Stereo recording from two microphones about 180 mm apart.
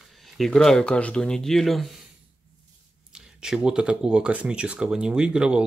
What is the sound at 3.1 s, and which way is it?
Speech, 5° right (ahead or behind).